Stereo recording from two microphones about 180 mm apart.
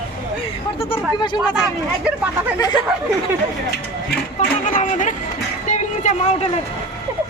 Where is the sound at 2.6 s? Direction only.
20° left (ahead or behind).